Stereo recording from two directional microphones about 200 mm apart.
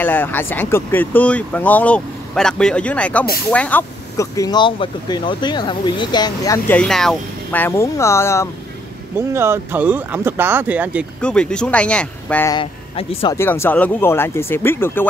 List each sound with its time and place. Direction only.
0.0 s speech: 10° left (ahead or behind)
6.8 s speech: centre (ahead or behind)
9.3 s speech: 10° right (ahead or behind)
11.1 s speech: 5° left (ahead or behind)
12.5 s speech: 30° left (ahead or behind)
13.4 s speech: 10° left (ahead or behind)